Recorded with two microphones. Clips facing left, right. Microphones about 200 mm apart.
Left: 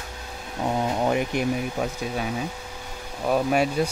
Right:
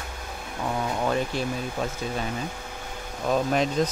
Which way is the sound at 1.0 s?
15° left (ahead or behind).